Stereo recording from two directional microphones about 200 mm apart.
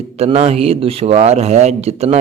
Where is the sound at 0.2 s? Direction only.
30° right (ahead or behind).